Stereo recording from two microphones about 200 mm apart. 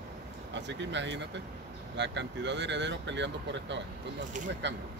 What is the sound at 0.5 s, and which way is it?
Speech, 60° right (ahead or behind).